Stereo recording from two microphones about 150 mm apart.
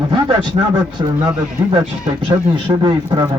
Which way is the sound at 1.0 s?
30° right (ahead or behind).